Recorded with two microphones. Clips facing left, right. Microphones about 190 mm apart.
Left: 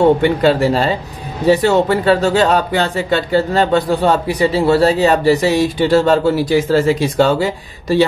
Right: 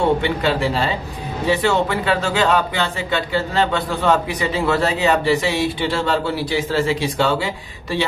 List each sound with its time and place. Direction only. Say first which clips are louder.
0.2 s speech: left 7 dB; 45° left (ahead or behind)